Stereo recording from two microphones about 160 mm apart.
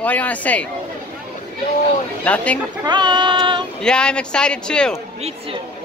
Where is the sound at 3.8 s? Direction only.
5° left (ahead or behind).